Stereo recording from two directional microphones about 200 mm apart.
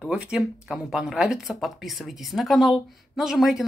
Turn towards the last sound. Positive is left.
turn(degrees=0)  # may be behind; listen again after turning